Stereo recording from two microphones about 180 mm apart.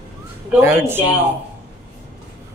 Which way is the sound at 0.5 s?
10° right (ahead or behind).